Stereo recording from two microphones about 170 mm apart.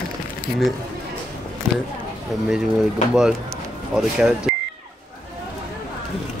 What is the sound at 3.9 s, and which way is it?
Speech, 5° right (ahead or behind).